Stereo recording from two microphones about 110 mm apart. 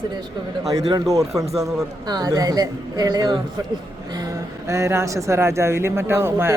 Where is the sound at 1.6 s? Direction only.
35° right (ahead or behind).